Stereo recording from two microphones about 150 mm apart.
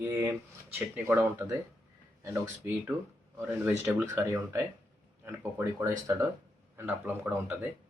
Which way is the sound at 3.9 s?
15° right (ahead or behind).